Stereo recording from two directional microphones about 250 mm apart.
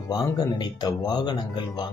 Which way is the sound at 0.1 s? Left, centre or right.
Centre.